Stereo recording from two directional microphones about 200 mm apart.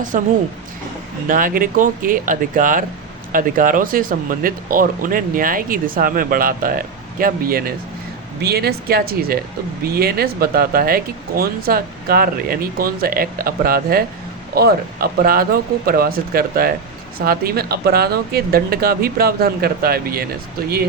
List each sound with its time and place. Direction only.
0.1 s speech: 45° right (ahead or behind)
1.3 s speech: 45° right (ahead or behind)